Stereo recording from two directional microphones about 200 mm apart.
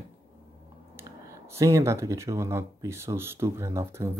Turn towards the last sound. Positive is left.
turn(degrees=-15)  # may be behind; listen again after turning